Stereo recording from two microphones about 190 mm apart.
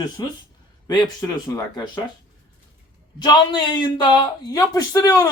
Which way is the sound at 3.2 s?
25° left (ahead or behind).